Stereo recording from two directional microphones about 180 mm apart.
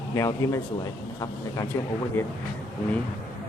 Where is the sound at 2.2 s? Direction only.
10° left (ahead or behind).